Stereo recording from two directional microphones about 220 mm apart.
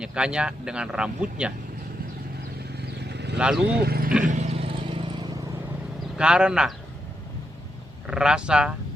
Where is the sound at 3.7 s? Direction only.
45° right (ahead or behind).